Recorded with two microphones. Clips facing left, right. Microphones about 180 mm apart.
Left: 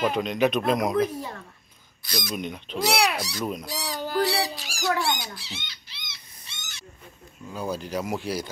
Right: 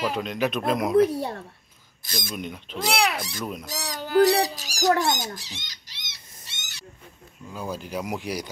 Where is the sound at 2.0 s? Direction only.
50° right (ahead or behind).